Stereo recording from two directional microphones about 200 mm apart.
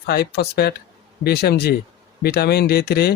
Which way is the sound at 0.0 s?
55° left (ahead or behind).